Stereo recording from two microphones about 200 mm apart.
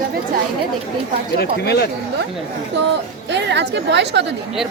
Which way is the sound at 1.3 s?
50° left (ahead or behind).